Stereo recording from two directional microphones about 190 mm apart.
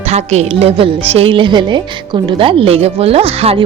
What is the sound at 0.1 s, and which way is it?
A woman's voice, 35° right (ahead or behind).